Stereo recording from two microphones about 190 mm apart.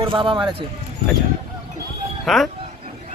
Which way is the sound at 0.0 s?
25° right (ahead or behind).